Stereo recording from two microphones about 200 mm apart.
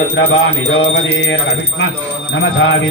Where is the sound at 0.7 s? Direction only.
75° left (ahead or behind).